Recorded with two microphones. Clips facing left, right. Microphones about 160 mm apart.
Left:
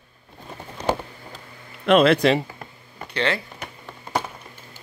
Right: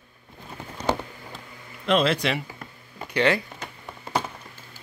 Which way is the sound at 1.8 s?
60° left (ahead or behind).